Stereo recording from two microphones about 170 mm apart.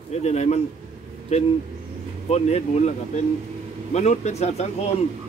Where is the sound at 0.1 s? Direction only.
40° left (ahead or behind).